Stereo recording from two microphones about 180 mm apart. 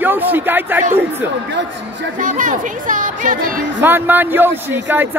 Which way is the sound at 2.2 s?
45° right (ahead or behind).